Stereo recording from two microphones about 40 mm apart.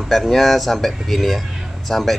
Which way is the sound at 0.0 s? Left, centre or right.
Centre.